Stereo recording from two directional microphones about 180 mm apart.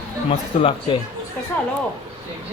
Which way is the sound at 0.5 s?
40° left (ahead or behind).